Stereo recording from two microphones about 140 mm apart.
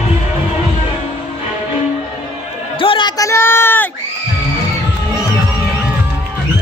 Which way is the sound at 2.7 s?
40° left (ahead or behind).